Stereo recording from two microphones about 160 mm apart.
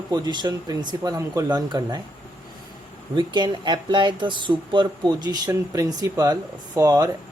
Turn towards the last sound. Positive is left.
turn(degrees=-25)  # may be behind; listen again after turning